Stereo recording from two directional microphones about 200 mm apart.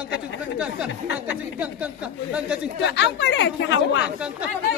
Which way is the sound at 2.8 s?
60° left (ahead or behind).